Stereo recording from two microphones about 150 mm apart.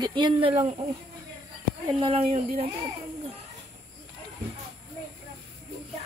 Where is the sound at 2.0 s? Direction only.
40° right (ahead or behind).